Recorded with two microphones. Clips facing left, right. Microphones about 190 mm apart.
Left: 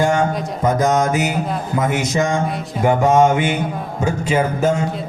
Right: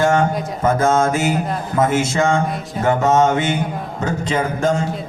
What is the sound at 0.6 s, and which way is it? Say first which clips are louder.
Speech: right 1 dB; 15° left (ahead or behind).